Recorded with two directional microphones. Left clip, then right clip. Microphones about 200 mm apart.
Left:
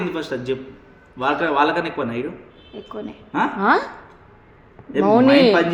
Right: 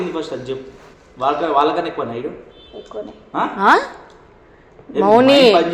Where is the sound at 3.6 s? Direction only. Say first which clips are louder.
Right 6 dB; 10° left (ahead or behind).